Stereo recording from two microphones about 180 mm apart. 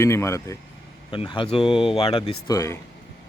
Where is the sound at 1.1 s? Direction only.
30° left (ahead or behind).